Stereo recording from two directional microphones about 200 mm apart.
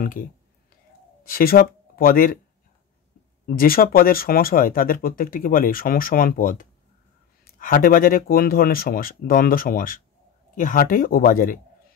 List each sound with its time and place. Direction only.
0.0 s speech: 45° left (ahead or behind)
3.4 s speech: 45° left (ahead or behind)